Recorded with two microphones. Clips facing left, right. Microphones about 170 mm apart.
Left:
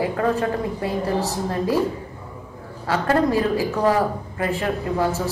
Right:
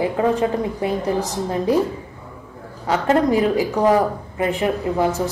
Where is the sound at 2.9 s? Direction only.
20° right (ahead or behind).